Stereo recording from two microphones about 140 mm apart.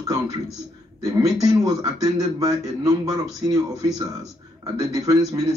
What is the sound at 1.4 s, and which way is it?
Speech, 30° right (ahead or behind).